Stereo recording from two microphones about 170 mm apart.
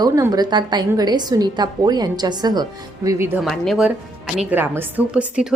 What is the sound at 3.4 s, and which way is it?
Speech, centre (ahead or behind).